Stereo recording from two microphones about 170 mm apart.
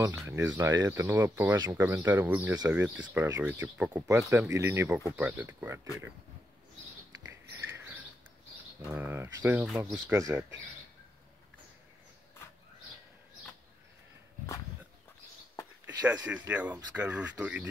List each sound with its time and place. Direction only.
0.0 s speech: 15° right (ahead or behind)
7.6 s rodents: 10° right (ahead or behind)
8.8 s speech: 10° right (ahead or behind)
16.4 s speech: 10° right (ahead or behind)